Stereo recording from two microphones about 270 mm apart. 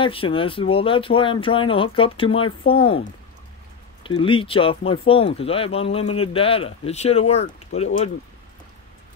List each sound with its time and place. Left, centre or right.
0.0 s speech: centre